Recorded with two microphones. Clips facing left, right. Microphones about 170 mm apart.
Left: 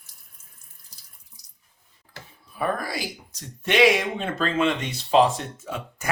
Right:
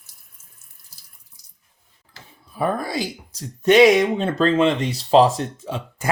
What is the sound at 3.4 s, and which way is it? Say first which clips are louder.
Speech: right 7 dB; 40° right (ahead or behind).